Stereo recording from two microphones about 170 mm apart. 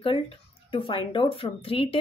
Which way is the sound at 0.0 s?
30° left (ahead or behind).